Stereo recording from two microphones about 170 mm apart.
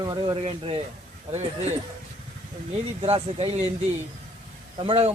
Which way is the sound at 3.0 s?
35° right (ahead or behind).